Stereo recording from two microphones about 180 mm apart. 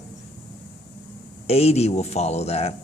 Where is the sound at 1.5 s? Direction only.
35° left (ahead or behind).